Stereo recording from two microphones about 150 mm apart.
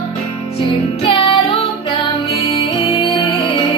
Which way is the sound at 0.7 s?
40° left (ahead or behind).